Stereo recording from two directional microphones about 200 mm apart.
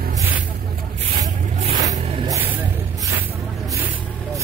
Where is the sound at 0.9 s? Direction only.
35° right (ahead or behind).